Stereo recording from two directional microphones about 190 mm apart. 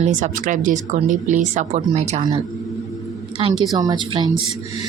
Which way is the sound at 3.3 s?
25° right (ahead or behind).